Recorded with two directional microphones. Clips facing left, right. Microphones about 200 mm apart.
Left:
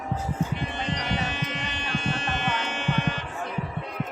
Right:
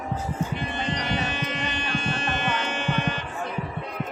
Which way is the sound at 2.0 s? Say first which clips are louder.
Left 1 dB; 50° right (ahead or behind).